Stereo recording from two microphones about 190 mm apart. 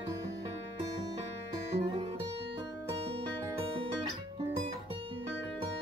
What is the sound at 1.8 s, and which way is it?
Music, 30° right (ahead or behind).